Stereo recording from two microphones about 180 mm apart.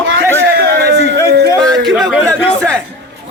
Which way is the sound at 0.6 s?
65° right (ahead or behind).